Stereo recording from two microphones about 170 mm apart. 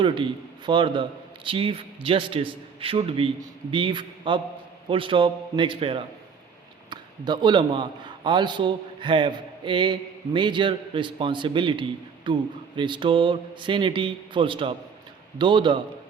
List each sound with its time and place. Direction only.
0.0 s a man's voice: 30° right (ahead or behind)